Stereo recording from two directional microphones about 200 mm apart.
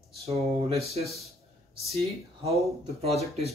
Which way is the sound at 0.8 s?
30° right (ahead or behind).